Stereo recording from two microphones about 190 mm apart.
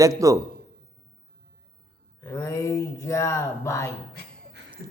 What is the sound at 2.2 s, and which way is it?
Speech, 15° left (ahead or behind).